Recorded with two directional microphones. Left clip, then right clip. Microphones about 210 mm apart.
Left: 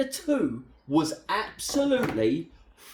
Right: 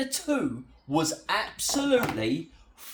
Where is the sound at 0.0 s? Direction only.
20° right (ahead or behind).